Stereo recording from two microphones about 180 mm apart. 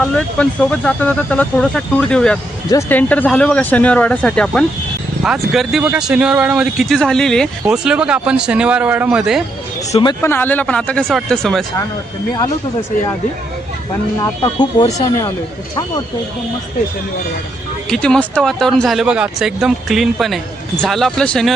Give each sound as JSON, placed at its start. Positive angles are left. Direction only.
{"t": 0.0, "sound": "speech", "side_deg": 5}
{"t": 9.9, "sound": "speech", "side_deg": 25}
{"t": 10.2, "sound": "speech", "side_deg": 10}
{"t": 14.4, "sound": "speech", "side_deg": 25}
{"t": 17.8, "sound": "speech", "side_deg": 5}